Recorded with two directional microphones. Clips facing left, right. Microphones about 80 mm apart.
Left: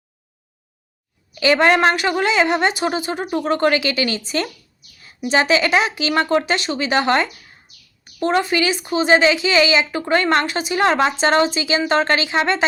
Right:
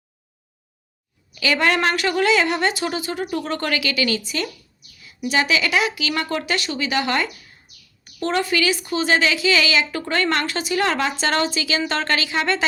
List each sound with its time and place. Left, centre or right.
1.4 s a woman's voice: left
8.2 s a woman's voice: left